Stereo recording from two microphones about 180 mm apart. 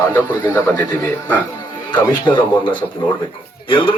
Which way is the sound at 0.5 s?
5° left (ahead or behind).